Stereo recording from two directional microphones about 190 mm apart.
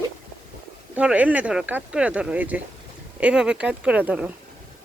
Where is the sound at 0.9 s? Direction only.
5° right (ahead or behind).